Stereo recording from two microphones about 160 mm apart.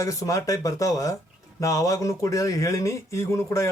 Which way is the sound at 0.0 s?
20° left (ahead or behind).